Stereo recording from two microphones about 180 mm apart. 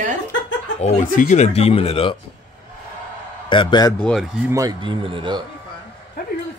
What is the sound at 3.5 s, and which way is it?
Speech, 25° left (ahead or behind).